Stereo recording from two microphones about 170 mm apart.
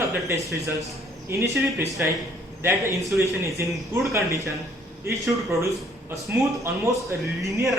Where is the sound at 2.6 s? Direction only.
15° right (ahead or behind).